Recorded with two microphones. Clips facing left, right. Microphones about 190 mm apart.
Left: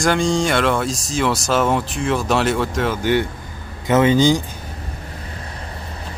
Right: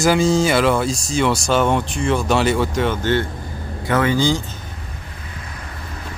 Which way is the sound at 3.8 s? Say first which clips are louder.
Left 4 dB; 20° left (ahead or behind).